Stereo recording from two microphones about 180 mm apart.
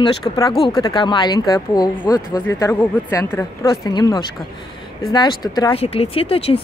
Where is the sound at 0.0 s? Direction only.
25° left (ahead or behind).